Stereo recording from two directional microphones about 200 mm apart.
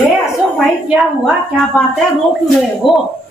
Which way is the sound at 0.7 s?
Centre (ahead or behind).